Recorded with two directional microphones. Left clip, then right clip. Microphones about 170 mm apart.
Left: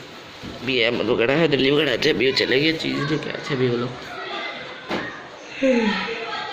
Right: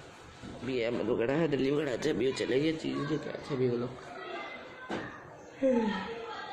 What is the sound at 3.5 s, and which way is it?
Speech, 5° right (ahead or behind).